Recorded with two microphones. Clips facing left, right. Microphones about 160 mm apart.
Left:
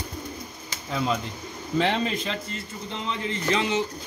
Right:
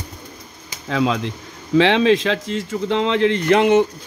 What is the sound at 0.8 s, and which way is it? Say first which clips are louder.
Speech: right 7 dB; 90° right.